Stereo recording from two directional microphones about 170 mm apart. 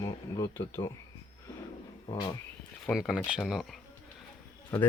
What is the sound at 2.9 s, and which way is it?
Speech, centre (ahead or behind).